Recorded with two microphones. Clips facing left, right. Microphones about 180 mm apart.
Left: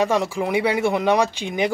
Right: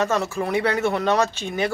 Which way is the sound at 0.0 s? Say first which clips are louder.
Left 2 dB; 10° left (ahead or behind).